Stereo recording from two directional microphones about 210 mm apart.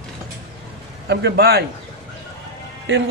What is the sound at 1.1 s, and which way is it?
Speech, 50° right (ahead or behind).